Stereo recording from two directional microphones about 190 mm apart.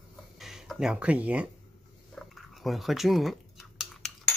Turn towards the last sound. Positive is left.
turn(degrees=0)  # may be behind; listen again after turning